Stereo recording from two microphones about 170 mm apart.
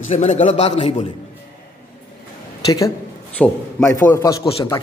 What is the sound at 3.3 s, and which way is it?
A man's voice, 15° left (ahead or behind).